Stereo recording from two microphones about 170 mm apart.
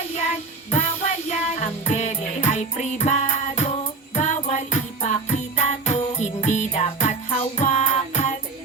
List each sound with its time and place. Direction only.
0.1 s music: 40° left (ahead or behind)